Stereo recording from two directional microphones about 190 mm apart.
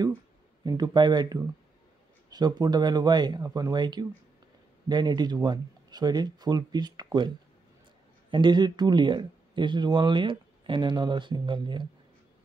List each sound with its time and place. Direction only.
0.7 s speech: 20° right (ahead or behind)